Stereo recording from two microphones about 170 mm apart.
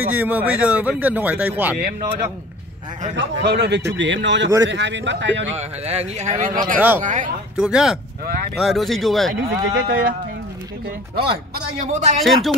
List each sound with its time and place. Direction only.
0.0 s speech: 10° right (ahead or behind)
3.2 s a man's voice: 85° right
5.6 s speech: 40° right (ahead or behind)
7.5 s speech: 5° right (ahead or behind)
9.3 s speech: 65° right (ahead or behind)
11.1 s speech: 65° right (ahead or behind)
11.9 s speech: 45° right (ahead or behind)
12.2 s speech: centre (ahead or behind)